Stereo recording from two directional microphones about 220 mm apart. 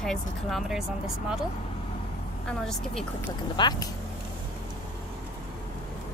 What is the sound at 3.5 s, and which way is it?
Speech, 20° left (ahead or behind).